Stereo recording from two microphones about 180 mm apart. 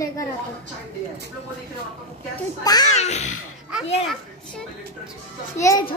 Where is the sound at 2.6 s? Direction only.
20° left (ahead or behind).